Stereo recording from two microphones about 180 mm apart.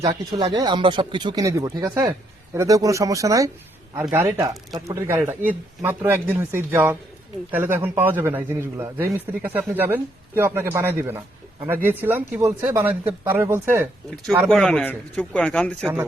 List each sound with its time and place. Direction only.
0.3 s a man's voice: 25° right (ahead or behind)
14.5 s a man's voice: 5° left (ahead or behind)